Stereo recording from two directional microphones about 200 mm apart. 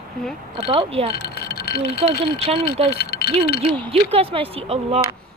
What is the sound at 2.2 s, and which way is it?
Speech, 30° right (ahead or behind).